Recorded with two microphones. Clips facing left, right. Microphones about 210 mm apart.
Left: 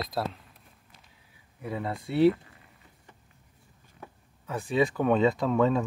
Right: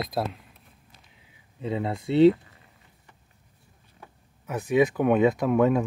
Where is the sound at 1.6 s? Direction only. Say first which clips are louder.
Right 4 dB; 25° right (ahead or behind).